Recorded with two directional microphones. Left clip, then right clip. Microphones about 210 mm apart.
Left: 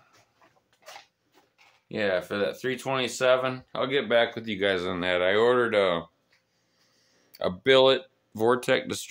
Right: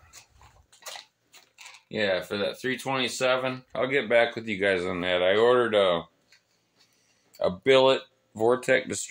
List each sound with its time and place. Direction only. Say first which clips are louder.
1.9 s speech: even; 10° left (ahead or behind)
7.3 s speech: even; 15° left (ahead or behind)